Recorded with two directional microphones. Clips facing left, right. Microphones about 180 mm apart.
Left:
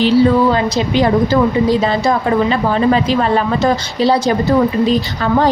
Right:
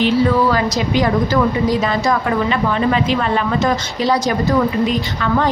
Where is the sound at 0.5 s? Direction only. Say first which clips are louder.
Left 2 dB; 30° left (ahead or behind).